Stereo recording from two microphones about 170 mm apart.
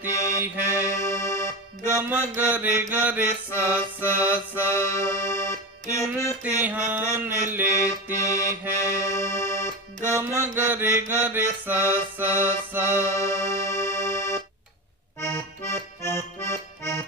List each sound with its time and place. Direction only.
0.4 s mantra: 10° right (ahead or behind)
0.8 s accordion: 15° left (ahead or behind)
1.9 s mantra: 10° right (ahead or behind)
4.7 s music: 15° left (ahead or behind)
6.4 s mantra: 10° right (ahead or behind)
7.7 s accordion: 20° left (ahead or behind)
10.0 s mantra: 15° right (ahead or behind)
13.2 s music: 15° left (ahead or behind)
15.1 s accordion: 15° left (ahead or behind)